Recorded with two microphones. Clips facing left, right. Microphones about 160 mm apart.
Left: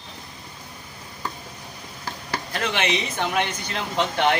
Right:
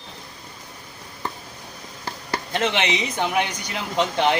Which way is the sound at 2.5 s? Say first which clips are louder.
Right 2 dB; 20° right (ahead or behind).